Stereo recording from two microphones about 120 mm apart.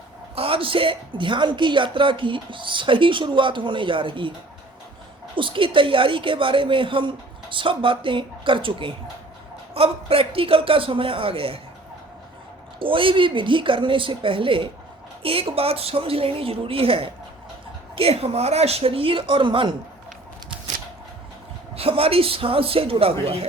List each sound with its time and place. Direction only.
0.3 s a woman's voice: 50° right (ahead or behind)
5.3 s a woman's voice: 45° right (ahead or behind)
12.8 s a woman's voice: 45° right (ahead or behind)
21.8 s a woman's voice: 50° right (ahead or behind)